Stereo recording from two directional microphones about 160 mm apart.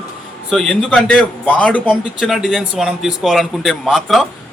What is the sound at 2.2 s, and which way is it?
A man's voice, centre (ahead or behind).